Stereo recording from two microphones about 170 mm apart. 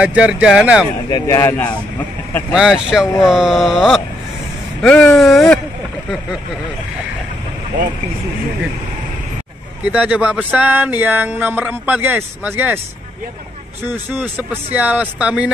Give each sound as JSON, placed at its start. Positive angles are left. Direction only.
{"t": 0.0, "sound": "speech", "side_deg": -5}
{"t": 1.1, "sound": "a man's voice", "side_deg": 20}
{"t": 2.5, "sound": "speech", "side_deg": -5}
{"t": 9.8, "sound": "speech", "side_deg": -10}
{"t": 13.8, "sound": "speech", "side_deg": -10}